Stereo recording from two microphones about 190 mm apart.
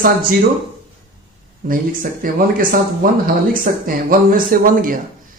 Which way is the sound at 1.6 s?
50° right (ahead or behind).